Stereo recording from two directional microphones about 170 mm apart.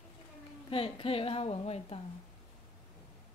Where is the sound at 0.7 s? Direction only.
35° left (ahead or behind).